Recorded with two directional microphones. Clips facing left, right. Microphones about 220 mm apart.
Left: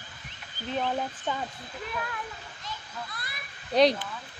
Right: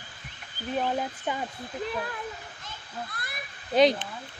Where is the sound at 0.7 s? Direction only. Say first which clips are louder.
Right 1 dB; 10° right (ahead or behind).